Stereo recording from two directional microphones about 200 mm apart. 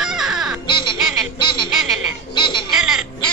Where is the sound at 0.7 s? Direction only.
25° left (ahead or behind).